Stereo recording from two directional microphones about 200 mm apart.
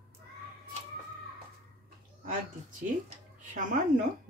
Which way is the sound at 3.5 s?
40° right (ahead or behind).